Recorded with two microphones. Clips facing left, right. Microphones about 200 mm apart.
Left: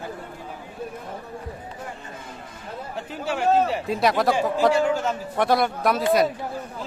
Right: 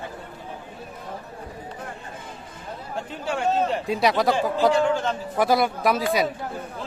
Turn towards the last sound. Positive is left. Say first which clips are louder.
# even
turn(degrees=0)  # may be behind; listen again after turning